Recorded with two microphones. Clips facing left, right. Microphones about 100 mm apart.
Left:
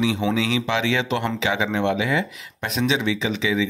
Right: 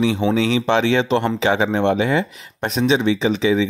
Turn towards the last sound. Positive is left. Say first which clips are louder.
# right 5 dB
turn(degrees=-35)  # may be behind; listen again after turning